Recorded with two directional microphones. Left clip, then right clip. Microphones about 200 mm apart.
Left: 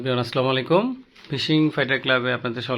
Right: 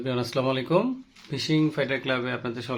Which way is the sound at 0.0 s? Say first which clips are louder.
Left 4 dB; 20° left (ahead or behind).